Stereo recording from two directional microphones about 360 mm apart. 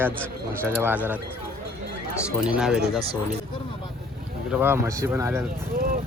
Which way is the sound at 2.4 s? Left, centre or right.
Centre.